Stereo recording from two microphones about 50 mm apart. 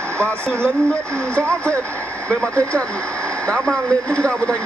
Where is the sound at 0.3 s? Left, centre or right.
Left.